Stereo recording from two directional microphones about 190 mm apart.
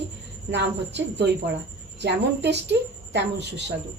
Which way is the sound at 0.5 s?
65° right (ahead or behind).